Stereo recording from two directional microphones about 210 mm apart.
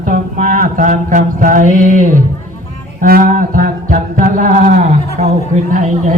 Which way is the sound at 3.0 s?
45° right (ahead or behind).